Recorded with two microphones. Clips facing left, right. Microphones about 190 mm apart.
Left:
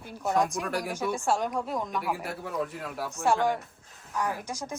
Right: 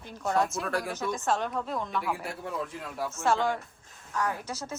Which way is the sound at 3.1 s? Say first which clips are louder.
Left 2 dB; 15° left (ahead or behind).